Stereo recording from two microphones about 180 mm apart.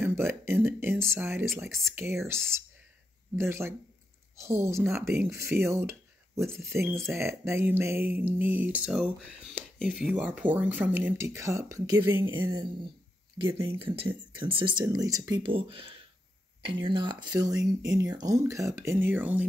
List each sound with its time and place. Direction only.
0.0 s a sound: 15° right (ahead or behind)
0.7 s speech: 10° right (ahead or behind)
12.4 s speech: 25° right (ahead or behind); by 19.4 s 10° right (ahead or behind)